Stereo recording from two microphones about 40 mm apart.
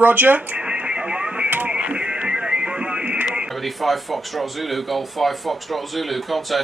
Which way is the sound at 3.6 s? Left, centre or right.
Centre.